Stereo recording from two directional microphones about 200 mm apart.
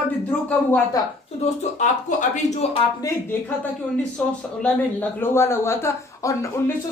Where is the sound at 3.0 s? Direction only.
10° left (ahead or behind).